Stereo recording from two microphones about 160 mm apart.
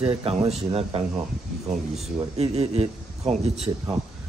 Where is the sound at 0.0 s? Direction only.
40° right (ahead or behind).